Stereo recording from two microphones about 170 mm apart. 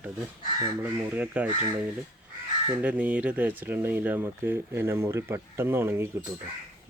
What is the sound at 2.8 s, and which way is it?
Speech, 10° right (ahead or behind).